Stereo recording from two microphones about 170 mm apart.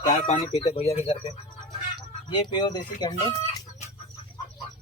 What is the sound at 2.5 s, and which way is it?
Speech, 25° left (ahead or behind).